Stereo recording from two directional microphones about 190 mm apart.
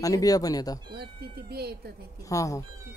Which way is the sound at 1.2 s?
55° right (ahead or behind).